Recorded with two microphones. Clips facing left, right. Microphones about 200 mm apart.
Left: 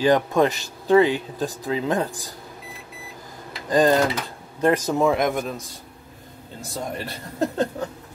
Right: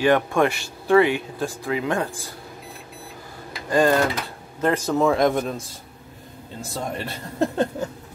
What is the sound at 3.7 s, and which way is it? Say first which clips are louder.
Speech: left 1 dB; 15° left (ahead or behind).